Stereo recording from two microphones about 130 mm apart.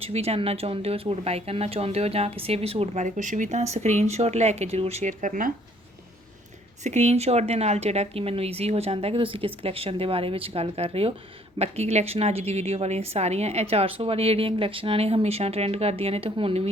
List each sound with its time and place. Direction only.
0.0 s speech: 50° right (ahead or behind); by 5.5 s 85° right
6.8 s speech: 60° right (ahead or behind)